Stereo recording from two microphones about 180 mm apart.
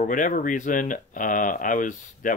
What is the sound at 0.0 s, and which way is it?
Speech, 45° left (ahead or behind).